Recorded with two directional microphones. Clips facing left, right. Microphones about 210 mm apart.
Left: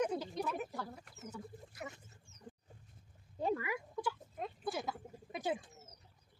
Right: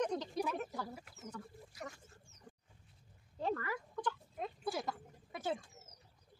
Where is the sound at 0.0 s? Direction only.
5° left (ahead or behind).